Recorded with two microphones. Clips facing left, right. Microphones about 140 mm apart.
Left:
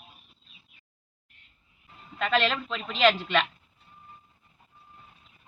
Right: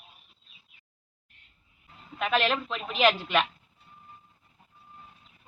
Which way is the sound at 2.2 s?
10° right (ahead or behind).